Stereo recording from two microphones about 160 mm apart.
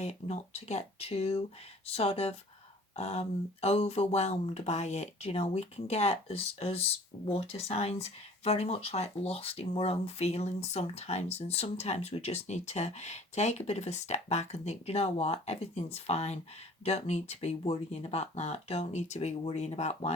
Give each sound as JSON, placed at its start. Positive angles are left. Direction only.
{"t": 0.0, "sound": "speech", "side_deg": 45}